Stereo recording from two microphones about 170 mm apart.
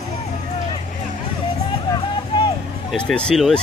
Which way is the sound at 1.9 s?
25° left (ahead or behind).